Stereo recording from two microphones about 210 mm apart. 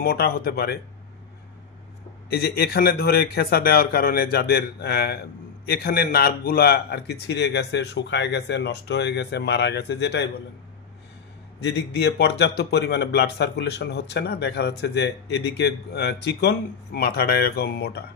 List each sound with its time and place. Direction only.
0.0 s a man's voice: 45° left (ahead or behind)
2.2 s a man's voice: 50° left (ahead or behind)
11.6 s a man's voice: 50° left (ahead or behind)